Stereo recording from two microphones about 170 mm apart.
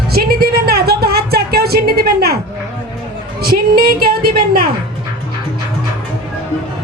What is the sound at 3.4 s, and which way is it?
A woman's voice, 60° right (ahead or behind).